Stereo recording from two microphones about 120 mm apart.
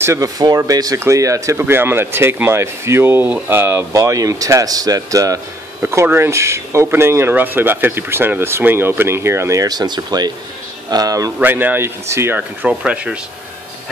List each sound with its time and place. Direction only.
0.0 s speech: 25° right (ahead or behind)
11.3 s speech: 15° right (ahead or behind)